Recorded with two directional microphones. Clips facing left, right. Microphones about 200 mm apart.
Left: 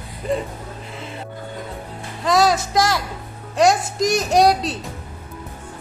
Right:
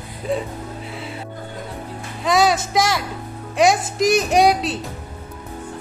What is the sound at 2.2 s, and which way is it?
A woman's voice, centre (ahead or behind).